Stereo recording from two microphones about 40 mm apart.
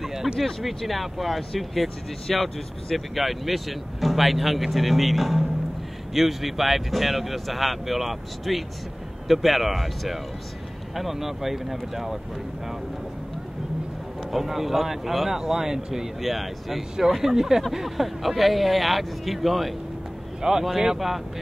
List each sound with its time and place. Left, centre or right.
0.0 s a sound: centre
0.6 s speech: centre
14.3 s speech: centre
16.2 s speech: centre
20.6 s speech: centre